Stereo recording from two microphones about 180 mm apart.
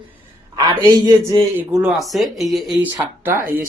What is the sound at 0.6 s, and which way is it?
Speech, 25° right (ahead or behind).